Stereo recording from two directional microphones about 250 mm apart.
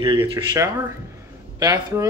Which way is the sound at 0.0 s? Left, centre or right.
Centre.